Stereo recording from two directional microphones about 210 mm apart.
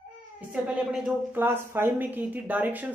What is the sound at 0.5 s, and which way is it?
Speech, 5° right (ahead or behind).